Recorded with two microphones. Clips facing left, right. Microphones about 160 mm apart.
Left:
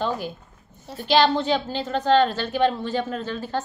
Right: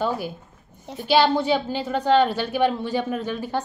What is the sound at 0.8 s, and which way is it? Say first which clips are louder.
A woman's voice: even; 15° right (ahead or behind).